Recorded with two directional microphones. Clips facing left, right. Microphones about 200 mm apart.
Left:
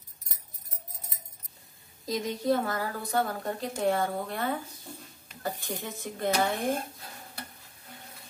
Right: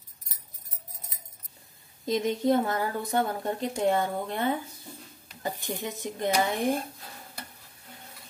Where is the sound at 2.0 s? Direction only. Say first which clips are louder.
Right 3 dB; 25° right (ahead or behind).